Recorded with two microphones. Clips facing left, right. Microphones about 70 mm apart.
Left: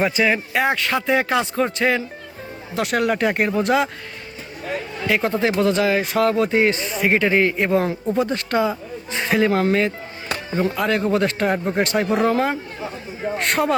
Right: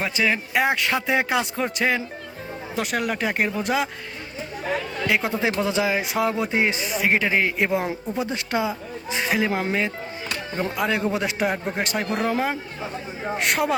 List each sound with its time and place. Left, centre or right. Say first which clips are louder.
0.0 s speech: left 4 dB; centre
0.7 s speech: left 3 dB; centre
5.2 s speech: left 5 dB; centre
9.5 s speech: left 6 dB; centre
10.2 s music: left 6 dB; left
10.7 s speech: left 3 dB; centre